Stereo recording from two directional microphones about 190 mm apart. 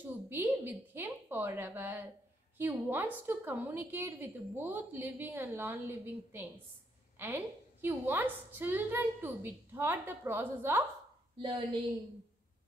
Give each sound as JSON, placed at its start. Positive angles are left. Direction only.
{"t": 0.3, "sound": "a woman's voice", "side_deg": -10}
{"t": 11.3, "sound": "speech", "side_deg": -25}